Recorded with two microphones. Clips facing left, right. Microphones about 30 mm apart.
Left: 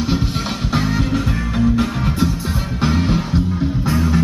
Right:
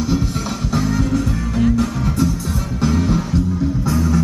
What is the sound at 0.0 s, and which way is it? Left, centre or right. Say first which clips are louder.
Music: even; left.